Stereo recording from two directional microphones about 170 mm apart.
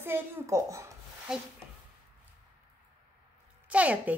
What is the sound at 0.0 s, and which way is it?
Speech, 15° right (ahead or behind).